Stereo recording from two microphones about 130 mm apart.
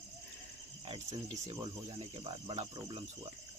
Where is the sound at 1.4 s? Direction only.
25° right (ahead or behind).